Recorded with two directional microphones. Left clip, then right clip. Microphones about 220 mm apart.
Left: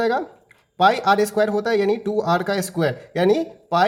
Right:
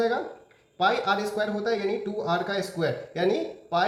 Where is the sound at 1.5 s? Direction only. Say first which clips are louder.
Left 7 dB; 45° left (ahead or behind).